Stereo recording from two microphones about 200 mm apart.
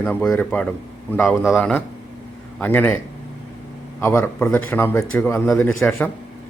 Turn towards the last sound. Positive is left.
turn(degrees=5)  # may be behind; listen again after turning